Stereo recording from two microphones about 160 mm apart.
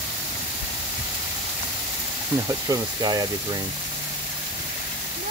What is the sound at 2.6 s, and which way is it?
Speech, 25° right (ahead or behind).